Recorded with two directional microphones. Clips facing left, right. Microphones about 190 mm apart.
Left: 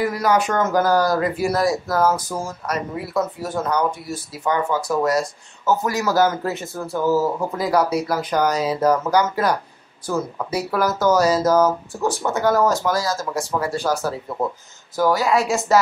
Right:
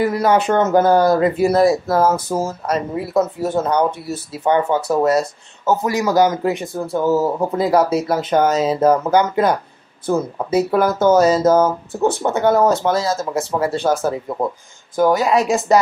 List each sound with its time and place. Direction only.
0.0 s speech: 25° right (ahead or behind)